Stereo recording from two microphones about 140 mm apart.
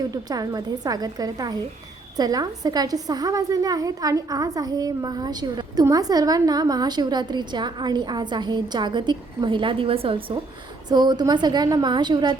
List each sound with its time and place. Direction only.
0.1 s a woman's voice: 25° right (ahead or behind)